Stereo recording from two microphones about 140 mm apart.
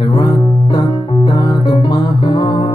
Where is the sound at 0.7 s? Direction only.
30° left (ahead or behind).